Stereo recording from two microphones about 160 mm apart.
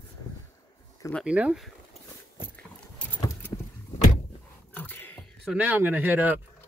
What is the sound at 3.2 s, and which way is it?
Vehicle, 20° left (ahead or behind).